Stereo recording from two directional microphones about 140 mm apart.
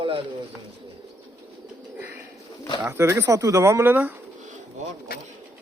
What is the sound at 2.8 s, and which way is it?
Speech, 15° right (ahead or behind).